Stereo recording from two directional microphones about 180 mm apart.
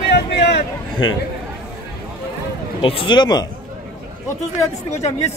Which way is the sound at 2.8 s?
30° left (ahead or behind).